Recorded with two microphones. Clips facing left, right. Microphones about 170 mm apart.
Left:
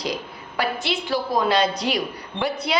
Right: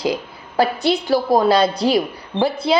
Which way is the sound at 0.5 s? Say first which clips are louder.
Right 8 dB; 40° right (ahead or behind).